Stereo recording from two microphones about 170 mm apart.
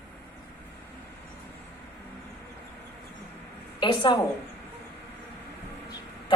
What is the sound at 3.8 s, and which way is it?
Speech, 25° left (ahead or behind).